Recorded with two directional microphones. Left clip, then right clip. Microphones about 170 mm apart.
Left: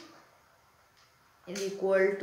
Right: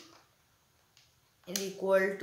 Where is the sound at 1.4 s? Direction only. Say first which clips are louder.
Left 2 dB; 15° right (ahead or behind).